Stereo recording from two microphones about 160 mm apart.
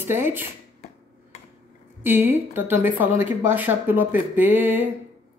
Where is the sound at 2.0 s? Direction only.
10° right (ahead or behind).